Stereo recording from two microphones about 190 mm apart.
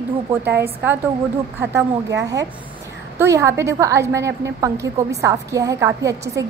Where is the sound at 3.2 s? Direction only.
15° right (ahead or behind).